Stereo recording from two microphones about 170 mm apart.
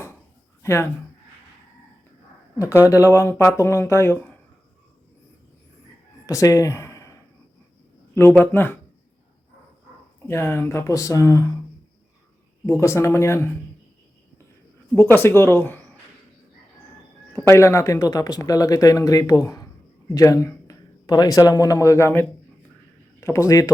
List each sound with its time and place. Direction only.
0.6 s speech: 15° left (ahead or behind)
2.8 s speech: 15° left (ahead or behind)
6.2 s speech: 20° left (ahead or behind)
8.1 s speech: 15° left (ahead or behind)
10.2 s speech: 15° left (ahead or behind)
12.6 s speech: 15° left (ahead or behind)
14.9 s speech: 15° left (ahead or behind)
17.3 s a man's voice: 15° left (ahead or behind)